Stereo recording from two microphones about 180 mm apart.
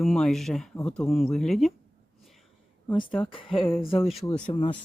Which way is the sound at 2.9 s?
30° left (ahead or behind).